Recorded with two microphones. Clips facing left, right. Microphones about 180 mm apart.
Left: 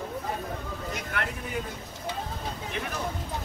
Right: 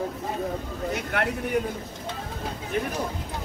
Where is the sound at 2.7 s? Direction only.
45° right (ahead or behind).